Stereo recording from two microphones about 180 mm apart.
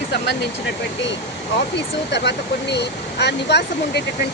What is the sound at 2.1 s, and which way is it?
Speech, 70° left (ahead or behind).